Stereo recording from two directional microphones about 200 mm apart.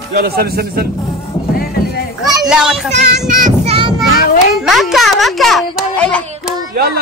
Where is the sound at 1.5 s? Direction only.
45° left (ahead or behind).